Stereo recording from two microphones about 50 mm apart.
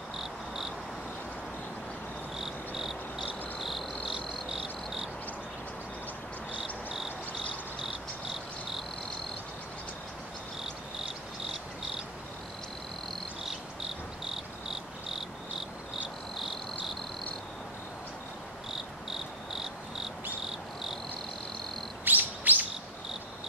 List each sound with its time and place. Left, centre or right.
0.2 s cricket: centre
2.3 s cricket: centre
6.6 s cricket: centre
14.3 s cricket: centre
19.0 s cricket: centre
22.0 s chirp: right